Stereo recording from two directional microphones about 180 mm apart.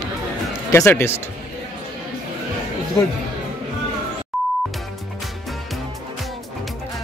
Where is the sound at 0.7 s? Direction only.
15° left (ahead or behind).